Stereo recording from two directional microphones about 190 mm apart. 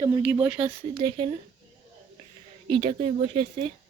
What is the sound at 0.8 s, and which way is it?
Speech, 30° right (ahead or behind).